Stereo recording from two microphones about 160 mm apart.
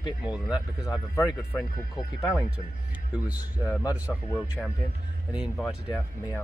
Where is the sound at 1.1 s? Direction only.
15° left (ahead or behind).